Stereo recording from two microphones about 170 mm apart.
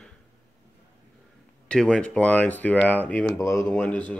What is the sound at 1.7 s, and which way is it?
Speech, 5° left (ahead or behind).